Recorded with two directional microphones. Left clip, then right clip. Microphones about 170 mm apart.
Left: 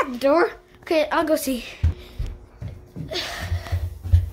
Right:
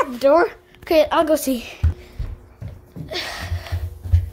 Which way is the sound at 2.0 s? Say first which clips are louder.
Even; 15° left (ahead or behind).